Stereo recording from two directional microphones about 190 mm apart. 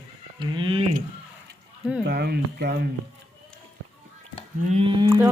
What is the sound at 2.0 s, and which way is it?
Speech, 55° right (ahead or behind).